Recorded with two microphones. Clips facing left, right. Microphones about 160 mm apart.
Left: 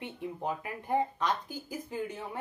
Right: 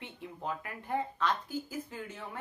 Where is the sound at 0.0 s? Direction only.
15° left (ahead or behind).